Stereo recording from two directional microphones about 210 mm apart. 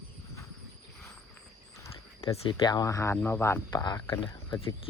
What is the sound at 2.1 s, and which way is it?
Speech, 25° left (ahead or behind).